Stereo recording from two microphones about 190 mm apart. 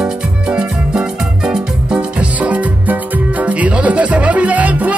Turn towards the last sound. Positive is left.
turn(degrees=-10)  # may be behind; listen again after turning